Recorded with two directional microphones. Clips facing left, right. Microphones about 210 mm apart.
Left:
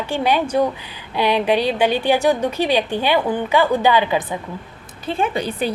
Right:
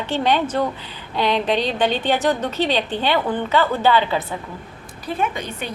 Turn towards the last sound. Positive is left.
turn(degrees=35)  # may be behind; listen again after turning